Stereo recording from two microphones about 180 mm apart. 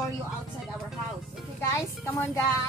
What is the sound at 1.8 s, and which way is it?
Speech, 15° left (ahead or behind).